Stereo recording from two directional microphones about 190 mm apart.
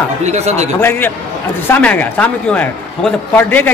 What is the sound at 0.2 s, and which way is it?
Speech, 35° right (ahead or behind).